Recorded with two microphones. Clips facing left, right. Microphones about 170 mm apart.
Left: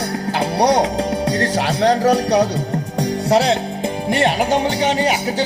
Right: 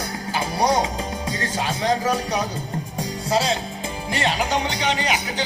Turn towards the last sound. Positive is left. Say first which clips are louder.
# left 6 dB
turn(degrees=50)  # may be behind; listen again after turning